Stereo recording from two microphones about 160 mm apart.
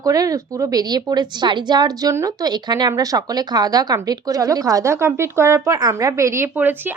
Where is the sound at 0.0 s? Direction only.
20° right (ahead or behind).